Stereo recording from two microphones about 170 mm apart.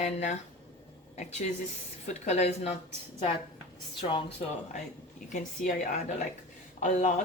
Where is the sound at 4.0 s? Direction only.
30° left (ahead or behind).